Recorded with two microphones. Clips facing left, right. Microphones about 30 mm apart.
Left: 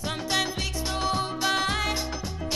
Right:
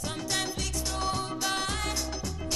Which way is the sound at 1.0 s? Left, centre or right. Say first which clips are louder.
Left 4 dB; left.